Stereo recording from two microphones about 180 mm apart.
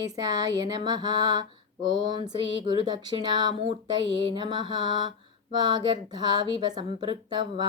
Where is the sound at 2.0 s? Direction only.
25° right (ahead or behind).